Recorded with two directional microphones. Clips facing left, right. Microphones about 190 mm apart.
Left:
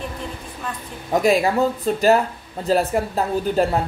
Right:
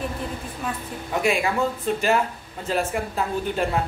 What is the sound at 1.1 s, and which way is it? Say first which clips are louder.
A woman's voice: left 6 dB; 35° left (ahead or behind).